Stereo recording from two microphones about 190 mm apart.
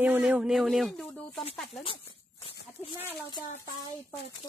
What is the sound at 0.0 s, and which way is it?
Speech, 10° right (ahead or behind).